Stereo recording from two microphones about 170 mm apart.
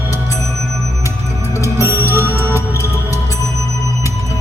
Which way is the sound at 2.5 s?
20° left (ahead or behind).